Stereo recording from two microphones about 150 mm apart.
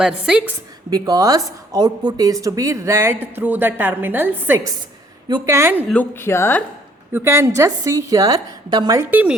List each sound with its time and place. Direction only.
0.0 s a woman's voice: 5° right (ahead or behind)
0.9 s a woman's voice: 25° right (ahead or behind)
5.9 s speech: 15° left (ahead or behind)
7.1 s speech: 15° right (ahead or behind)
9.0 s a woman's voice: 10° right (ahead or behind)